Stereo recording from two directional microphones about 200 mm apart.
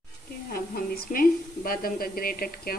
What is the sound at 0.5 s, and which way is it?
A woman's voice, 50° left (ahead or behind).